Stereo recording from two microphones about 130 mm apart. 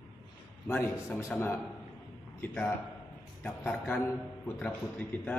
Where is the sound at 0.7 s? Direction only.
15° left (ahead or behind).